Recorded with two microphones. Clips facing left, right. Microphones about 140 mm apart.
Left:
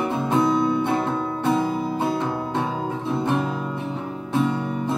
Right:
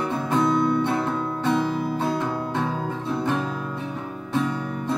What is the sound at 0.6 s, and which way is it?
Music, 20° left (ahead or behind).